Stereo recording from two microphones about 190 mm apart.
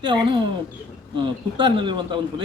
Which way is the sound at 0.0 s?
25° right (ahead or behind).